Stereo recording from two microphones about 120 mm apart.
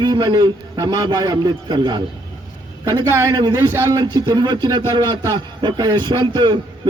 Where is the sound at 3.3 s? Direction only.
35° right (ahead or behind).